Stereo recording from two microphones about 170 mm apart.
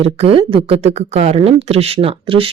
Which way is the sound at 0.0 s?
35° right (ahead or behind).